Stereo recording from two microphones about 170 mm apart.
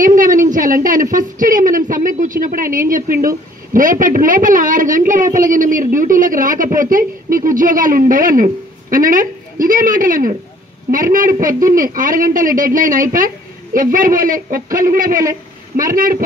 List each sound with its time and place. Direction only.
0.0 s a woman's voice: 50° right (ahead or behind)